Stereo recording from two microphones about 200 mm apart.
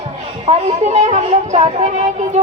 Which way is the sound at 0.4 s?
35° right (ahead or behind).